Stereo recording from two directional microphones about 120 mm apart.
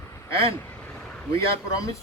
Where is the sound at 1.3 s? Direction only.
25° left (ahead or behind).